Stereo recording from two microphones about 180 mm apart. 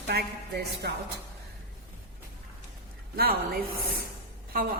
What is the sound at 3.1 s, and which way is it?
Speech, 60° right (ahead or behind).